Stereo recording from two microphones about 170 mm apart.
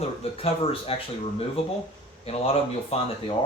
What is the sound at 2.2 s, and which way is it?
Speech, 35° left (ahead or behind).